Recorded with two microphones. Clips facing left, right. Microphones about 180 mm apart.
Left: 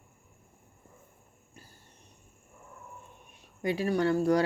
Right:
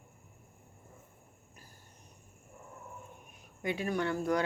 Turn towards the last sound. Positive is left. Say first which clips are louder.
# left 6 dB
turn(degrees=35)  # may be behind; listen again after turning